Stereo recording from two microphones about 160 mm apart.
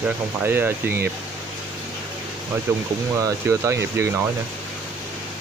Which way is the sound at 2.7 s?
15° right (ahead or behind).